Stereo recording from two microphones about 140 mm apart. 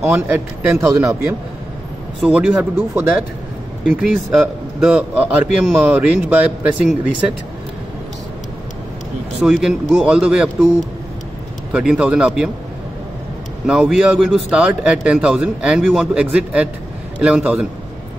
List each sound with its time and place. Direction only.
0.1 s a man's voice: 5° right (ahead or behind)
0.7 s speech: 20° right (ahead or behind)
2.2 s a man's voice: 5° right (ahead or behind)
3.8 s a man's voice: 5° right (ahead or behind)
9.4 s speech: 5° right (ahead or behind)
11.7 s a man's voice: 10° right (ahead or behind)
13.7 s a man's voice: 5° right (ahead or behind)